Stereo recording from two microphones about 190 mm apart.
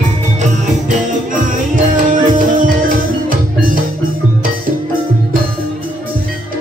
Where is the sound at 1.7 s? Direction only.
45° right (ahead or behind).